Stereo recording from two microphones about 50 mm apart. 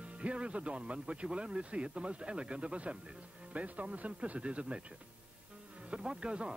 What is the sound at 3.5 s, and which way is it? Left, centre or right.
Speech, right.